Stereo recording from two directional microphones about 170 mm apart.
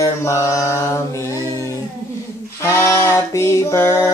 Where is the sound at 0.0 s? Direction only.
20° left (ahead or behind).